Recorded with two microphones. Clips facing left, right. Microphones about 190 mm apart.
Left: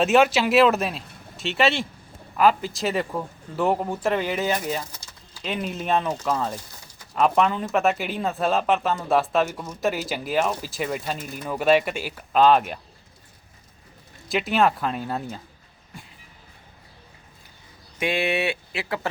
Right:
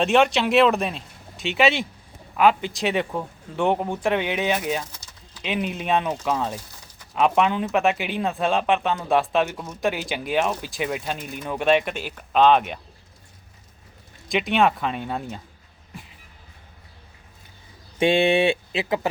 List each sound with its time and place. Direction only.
0.0 s speech: 5° left (ahead or behind)
14.3 s speech: centre (ahead or behind)
18.0 s speech: 25° right (ahead or behind)